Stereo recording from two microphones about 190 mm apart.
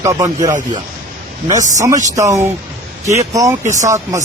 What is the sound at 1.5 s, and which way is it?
Speech, 40° right (ahead or behind).